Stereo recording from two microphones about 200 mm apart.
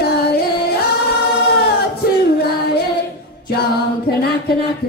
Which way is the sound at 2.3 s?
50° left (ahead or behind).